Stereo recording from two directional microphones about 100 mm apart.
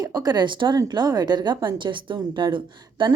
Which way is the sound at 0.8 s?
40° right (ahead or behind).